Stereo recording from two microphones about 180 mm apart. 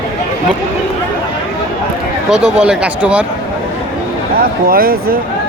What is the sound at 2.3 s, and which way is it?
Speech, 5° right (ahead or behind).